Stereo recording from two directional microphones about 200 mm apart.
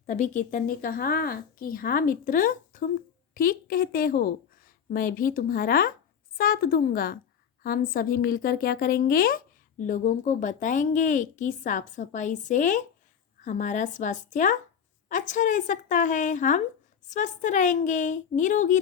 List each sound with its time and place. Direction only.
0.0 s a woman's voice: 35° left (ahead or behind)